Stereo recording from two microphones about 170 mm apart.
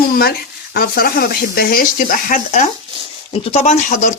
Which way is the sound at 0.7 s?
65° left (ahead or behind).